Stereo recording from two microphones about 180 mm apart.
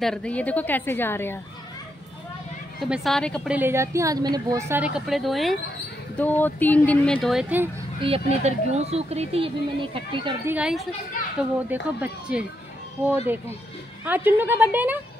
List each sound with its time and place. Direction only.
0.0 s speech: 5° left (ahead or behind)
2.8 s a woman's voice: centre (ahead or behind)
3.5 s a woman's voice: 15° right (ahead or behind)
8.0 s speech: 35° right (ahead or behind)
10.4 s a woman's voice: 5° right (ahead or behind)